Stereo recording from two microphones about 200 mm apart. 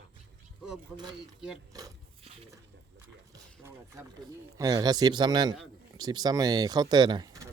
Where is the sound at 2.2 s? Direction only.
30° right (ahead or behind).